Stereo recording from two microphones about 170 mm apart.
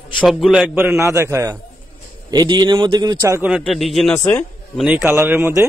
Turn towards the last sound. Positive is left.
turn(degrees=-15)  # may be behind; listen again after turning